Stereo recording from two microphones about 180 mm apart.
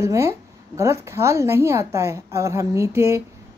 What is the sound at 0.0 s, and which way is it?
A woman's voice, 15° right (ahead or behind).